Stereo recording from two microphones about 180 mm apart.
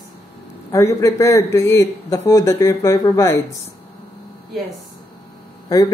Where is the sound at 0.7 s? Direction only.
15° left (ahead or behind).